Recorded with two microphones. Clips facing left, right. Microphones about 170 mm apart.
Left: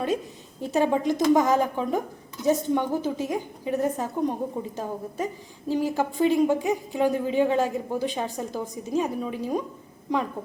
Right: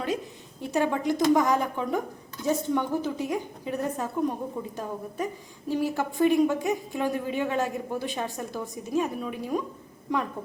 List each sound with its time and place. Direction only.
0.7 s a woman's voice: 20° left (ahead or behind)